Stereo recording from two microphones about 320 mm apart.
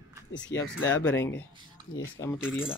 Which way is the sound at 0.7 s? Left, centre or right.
Left.